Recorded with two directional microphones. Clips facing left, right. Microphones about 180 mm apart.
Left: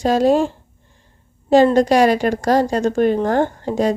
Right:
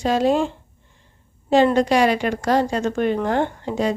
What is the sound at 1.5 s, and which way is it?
A woman's voice, 40° left (ahead or behind).